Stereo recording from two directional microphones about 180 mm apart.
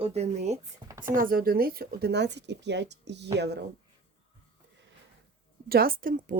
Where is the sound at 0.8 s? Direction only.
20° right (ahead or behind).